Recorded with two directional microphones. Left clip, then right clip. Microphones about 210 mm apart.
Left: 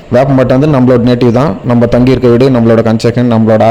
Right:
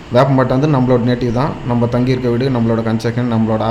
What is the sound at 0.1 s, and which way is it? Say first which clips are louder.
A man's voice: left 5 dB; 35° left (ahead or behind).